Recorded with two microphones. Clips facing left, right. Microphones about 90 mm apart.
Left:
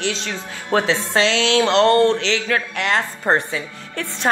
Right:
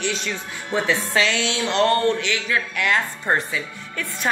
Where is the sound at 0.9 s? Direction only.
25° left (ahead or behind).